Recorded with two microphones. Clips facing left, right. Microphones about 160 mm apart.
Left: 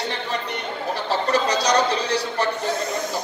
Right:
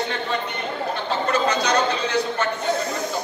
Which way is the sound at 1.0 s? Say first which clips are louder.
Left 1 dB; 35° left (ahead or behind).